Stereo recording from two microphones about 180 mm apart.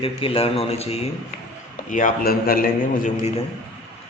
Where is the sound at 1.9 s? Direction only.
50° left (ahead or behind).